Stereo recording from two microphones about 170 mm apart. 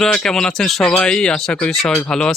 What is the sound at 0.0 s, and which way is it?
Speech, 5° left (ahead or behind).